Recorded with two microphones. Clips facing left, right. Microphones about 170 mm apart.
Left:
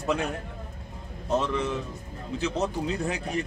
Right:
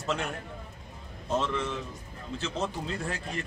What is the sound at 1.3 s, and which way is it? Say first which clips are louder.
Speech: left 3 dB; 15° left (ahead or behind).